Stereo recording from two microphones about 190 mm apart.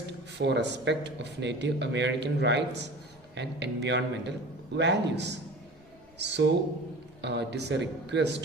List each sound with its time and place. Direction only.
0.4 s speech: 65° right (ahead or behind)